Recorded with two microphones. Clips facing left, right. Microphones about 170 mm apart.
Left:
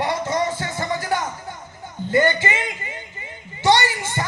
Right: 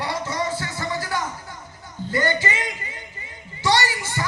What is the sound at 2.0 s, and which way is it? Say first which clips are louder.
Speech: left 4 dB; 25° left (ahead or behind).